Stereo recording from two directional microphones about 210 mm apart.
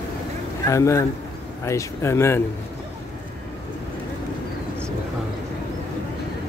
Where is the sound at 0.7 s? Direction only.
15° left (ahead or behind).